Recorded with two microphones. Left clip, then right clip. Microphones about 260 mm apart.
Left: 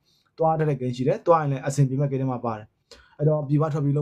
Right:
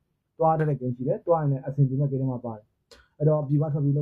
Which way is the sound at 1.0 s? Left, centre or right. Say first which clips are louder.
Left 4 dB; centre.